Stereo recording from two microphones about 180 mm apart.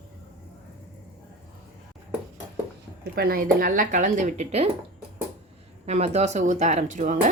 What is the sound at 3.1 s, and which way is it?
Speech, 55° right (ahead or behind).